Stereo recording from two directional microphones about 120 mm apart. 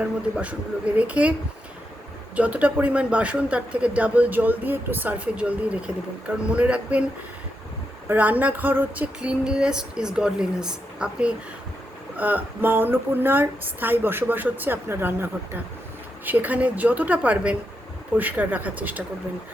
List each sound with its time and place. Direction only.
0.3 s speech: 10° right (ahead or behind)
2.3 s speech: 10° right (ahead or behind)
8.0 s speech: 15° right (ahead or behind)